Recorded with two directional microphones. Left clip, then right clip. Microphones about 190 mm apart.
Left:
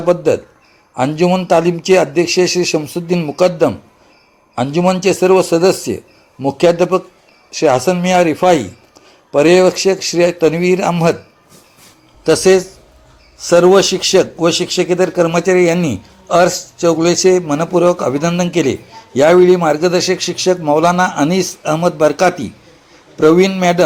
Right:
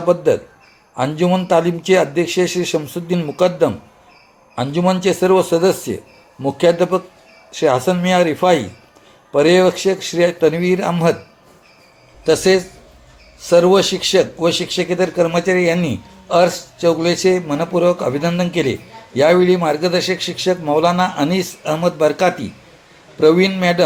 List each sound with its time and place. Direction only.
0.0 s a man's voice: 25° left (ahead or behind)
12.2 s a man's voice: 30° left (ahead or behind)